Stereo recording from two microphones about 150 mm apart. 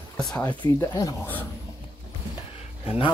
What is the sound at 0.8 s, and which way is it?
Speech, 25° left (ahead or behind).